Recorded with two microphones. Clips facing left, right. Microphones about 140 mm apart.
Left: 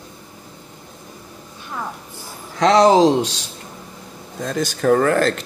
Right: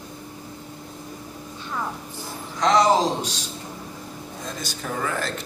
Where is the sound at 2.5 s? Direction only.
75° left (ahead or behind).